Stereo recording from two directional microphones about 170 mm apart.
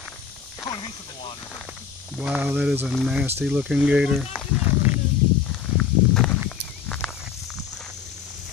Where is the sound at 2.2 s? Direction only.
10° right (ahead or behind).